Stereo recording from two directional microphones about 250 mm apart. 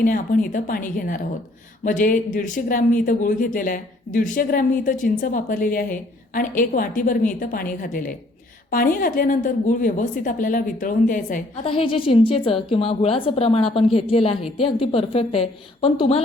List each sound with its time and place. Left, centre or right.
0.0 s a woman's voice: left